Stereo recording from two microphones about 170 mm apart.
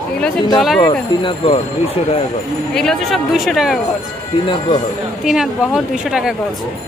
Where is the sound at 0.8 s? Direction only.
25° left (ahead or behind).